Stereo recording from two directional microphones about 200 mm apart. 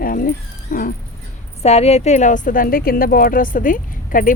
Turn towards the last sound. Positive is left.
turn(degrees=40)  # may be behind; listen again after turning